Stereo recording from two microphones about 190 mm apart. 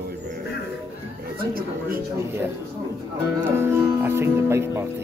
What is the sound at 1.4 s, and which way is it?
Speech, 50° right (ahead or behind).